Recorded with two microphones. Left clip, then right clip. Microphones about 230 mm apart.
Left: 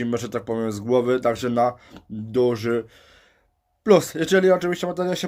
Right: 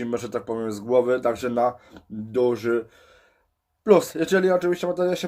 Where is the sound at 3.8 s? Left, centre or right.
Left.